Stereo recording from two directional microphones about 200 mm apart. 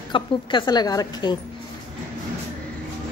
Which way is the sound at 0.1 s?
25° left (ahead or behind).